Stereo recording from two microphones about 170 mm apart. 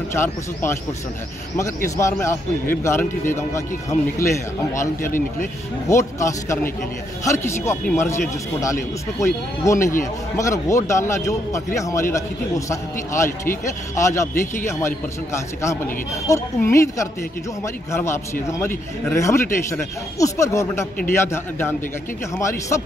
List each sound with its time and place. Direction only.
0.1 s a man's voice: 15° left (ahead or behind)
2.0 s a man's voice: 15° left (ahead or behind)
5.9 s a man's voice: 15° left (ahead or behind)